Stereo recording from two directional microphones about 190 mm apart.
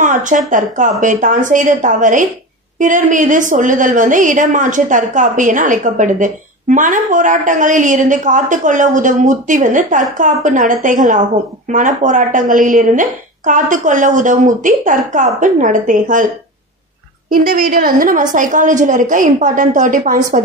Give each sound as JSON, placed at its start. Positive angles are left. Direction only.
{"t": 0.0, "sound": "a sound", "side_deg": -40}
{"t": 0.5, "sound": "a woman's voice", "side_deg": -40}
{"t": 17.3, "sound": "a woman's voice", "side_deg": -50}